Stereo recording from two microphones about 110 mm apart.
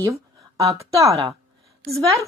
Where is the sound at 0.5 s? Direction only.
30° right (ahead or behind).